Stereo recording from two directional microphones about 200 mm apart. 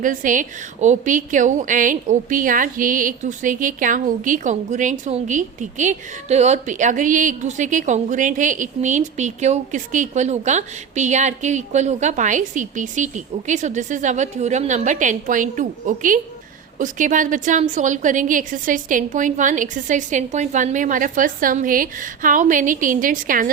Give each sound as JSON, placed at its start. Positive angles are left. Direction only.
{"t": 0.0, "sound": "a woman's voice", "side_deg": -40}